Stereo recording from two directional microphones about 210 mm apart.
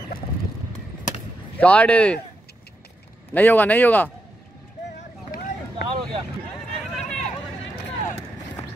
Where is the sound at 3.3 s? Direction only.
10° left (ahead or behind).